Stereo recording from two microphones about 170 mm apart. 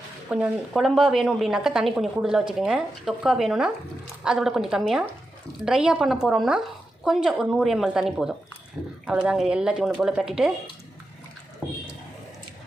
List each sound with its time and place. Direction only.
0.3 s a woman's voice: 5° right (ahead or behind)